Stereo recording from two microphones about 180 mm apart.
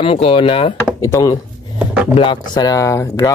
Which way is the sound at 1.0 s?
15° left (ahead or behind).